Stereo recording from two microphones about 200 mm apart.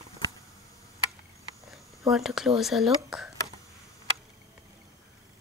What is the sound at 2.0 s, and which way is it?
Speech, centre (ahead or behind).